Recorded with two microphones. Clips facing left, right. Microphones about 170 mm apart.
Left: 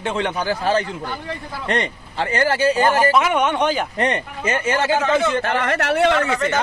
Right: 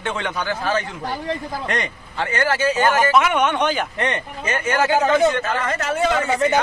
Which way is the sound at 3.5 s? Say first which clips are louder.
Left 1 dB; 10° left (ahead or behind).